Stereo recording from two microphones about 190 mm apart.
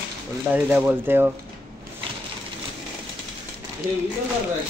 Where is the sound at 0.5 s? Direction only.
10° right (ahead or behind).